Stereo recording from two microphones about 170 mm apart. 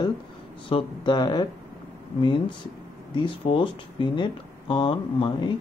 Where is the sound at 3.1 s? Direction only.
30° left (ahead or behind).